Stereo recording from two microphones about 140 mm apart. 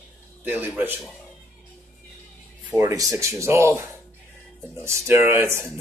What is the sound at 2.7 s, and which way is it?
Speech, 25° right (ahead or behind).